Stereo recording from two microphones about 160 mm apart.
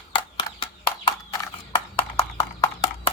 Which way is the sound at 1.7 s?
30° left (ahead or behind).